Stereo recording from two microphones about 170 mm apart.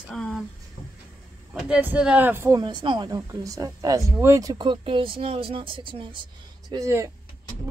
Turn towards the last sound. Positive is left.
turn(degrees=-15)  # may be behind; listen again after turning